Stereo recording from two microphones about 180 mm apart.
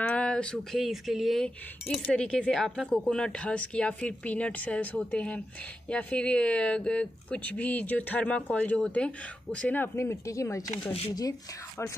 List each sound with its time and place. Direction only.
0.0 s speech: 5° left (ahead or behind)
10.8 s speech: 30° left (ahead or behind)